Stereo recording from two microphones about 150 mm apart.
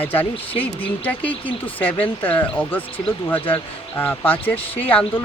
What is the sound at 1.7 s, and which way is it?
Speech, 10° left (ahead or behind).